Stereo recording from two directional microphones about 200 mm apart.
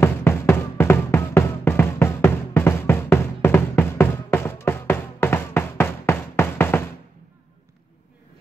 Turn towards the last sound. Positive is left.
turn(degrees=10)  # may be behind; listen again after turning